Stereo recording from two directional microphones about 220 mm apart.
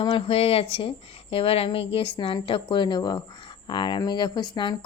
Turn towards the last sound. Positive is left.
turn(degrees=20)  # may be behind; listen again after turning